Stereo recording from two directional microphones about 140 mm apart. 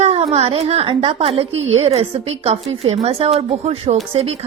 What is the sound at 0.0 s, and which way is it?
Speech, 50° right (ahead or behind).